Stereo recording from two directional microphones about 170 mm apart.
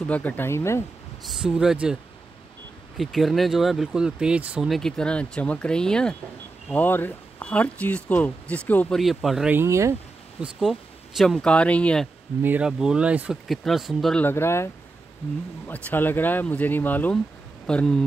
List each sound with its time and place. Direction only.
0.1 s speech: 10° left (ahead or behind)
1.2 s speech: 5° right (ahead or behind)
3.0 s speech: centre (ahead or behind)
9.6 s speech: 15° right (ahead or behind)
10.4 s speech: centre (ahead or behind)
12.4 s speech: 10° right (ahead or behind)
14.2 s speech: 15° left (ahead or behind)